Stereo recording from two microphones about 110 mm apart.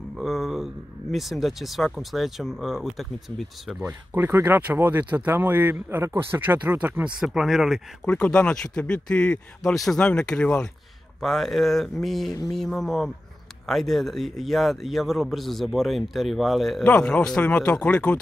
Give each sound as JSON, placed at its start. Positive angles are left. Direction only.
{"t": 0.2, "sound": "a sound", "side_deg": 0}
{"t": 1.1, "sound": "speech", "side_deg": 0}
{"t": 3.8, "sound": "speech", "side_deg": -20}
{"t": 7.2, "sound": "speech", "side_deg": 0}
{"t": 8.0, "sound": "speech", "side_deg": 10}
{"t": 16.8, "sound": "speech", "side_deg": 10}